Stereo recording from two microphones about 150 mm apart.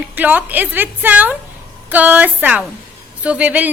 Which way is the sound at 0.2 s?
10° right (ahead or behind).